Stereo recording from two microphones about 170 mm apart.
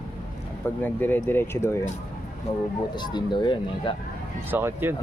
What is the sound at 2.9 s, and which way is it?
Speech, 25° left (ahead or behind).